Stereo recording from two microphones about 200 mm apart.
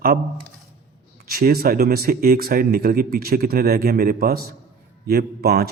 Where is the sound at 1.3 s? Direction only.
50° right (ahead or behind).